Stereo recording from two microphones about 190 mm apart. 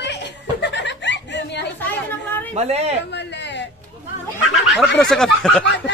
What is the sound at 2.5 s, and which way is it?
Speech, 35° right (ahead or behind).